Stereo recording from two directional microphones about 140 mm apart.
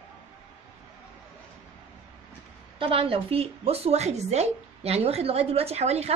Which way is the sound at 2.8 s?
40° right (ahead or behind).